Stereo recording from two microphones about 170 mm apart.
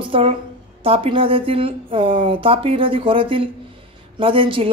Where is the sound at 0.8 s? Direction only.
30° right (ahead or behind).